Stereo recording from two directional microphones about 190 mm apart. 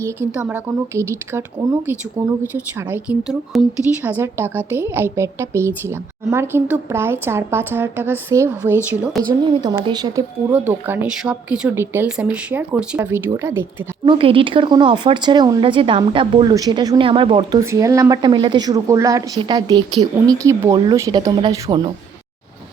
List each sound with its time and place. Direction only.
0.0 s a woman's voice: 10° right (ahead or behind)
10.5 s speech: 10° right (ahead or behind)
14.1 s a woman's voice: 30° right (ahead or behind)
17.6 s a woman's voice: 15° right (ahead or behind)